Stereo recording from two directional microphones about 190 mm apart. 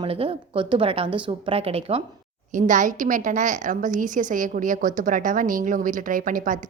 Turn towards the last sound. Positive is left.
turn(degrees=-45)  # may be behind; listen again after turning